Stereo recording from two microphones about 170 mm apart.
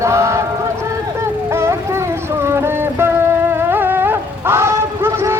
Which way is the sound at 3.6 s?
10° right (ahead or behind).